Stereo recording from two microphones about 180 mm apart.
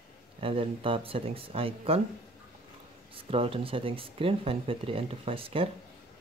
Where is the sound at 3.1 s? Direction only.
30° right (ahead or behind).